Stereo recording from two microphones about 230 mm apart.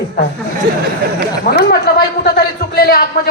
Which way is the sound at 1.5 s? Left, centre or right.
Left.